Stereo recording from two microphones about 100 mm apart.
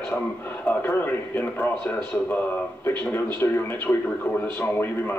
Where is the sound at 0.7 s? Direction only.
20° left (ahead or behind).